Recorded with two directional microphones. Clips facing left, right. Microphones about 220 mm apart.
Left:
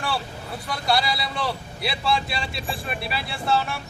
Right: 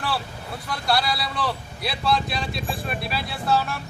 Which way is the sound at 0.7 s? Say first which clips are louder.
Even; centre (ahead or behind).